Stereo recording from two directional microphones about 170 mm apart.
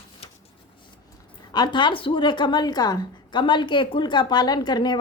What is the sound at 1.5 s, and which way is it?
A woman's voice, 25° left (ahead or behind).